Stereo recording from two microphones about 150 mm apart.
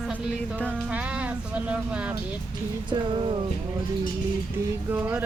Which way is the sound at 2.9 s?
35° right (ahead or behind).